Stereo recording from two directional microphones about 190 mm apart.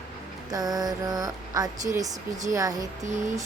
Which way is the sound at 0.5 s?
20° right (ahead or behind).